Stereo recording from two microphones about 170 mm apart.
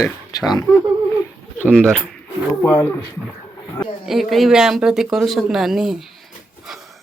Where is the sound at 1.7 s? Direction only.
5° left (ahead or behind).